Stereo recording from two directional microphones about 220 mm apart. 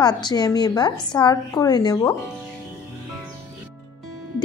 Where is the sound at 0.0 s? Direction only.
20° left (ahead or behind).